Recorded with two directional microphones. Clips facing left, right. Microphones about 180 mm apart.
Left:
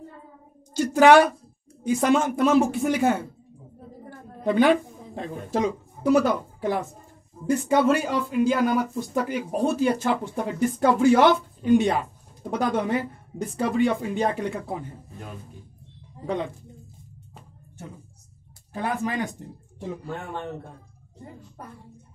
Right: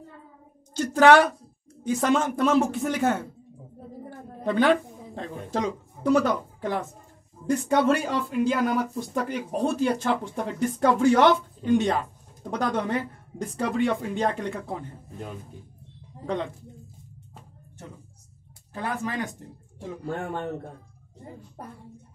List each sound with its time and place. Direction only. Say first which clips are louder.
0.7 s a woman's voice: left 2 dB; 10° left (ahead or behind)
4.5 s speech: left 2 dB; 15° left (ahead or behind)
18.7 s speech: left 3 dB; 15° left (ahead or behind)
20.1 s a man's voice: right 7 dB; 45° right (ahead or behind)